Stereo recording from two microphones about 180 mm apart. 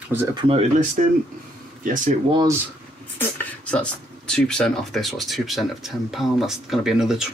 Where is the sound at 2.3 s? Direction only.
20° right (ahead or behind).